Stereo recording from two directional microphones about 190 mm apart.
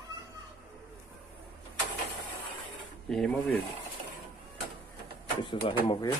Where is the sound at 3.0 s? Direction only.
5° left (ahead or behind).